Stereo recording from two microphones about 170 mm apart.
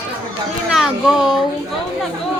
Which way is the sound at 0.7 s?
Centre (ahead or behind).